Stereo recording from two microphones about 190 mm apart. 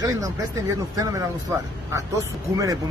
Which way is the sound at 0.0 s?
20° right (ahead or behind).